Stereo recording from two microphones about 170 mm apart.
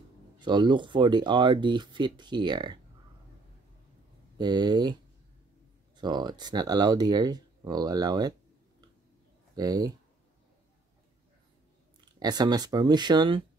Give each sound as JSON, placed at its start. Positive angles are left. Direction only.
{"t": 0.4, "sound": "speech", "side_deg": -25}
{"t": 4.4, "sound": "speech", "side_deg": -25}
{"t": 5.9, "sound": "speech", "side_deg": -25}
{"t": 9.6, "sound": "speech", "side_deg": -20}
{"t": 12.2, "sound": "speech", "side_deg": -25}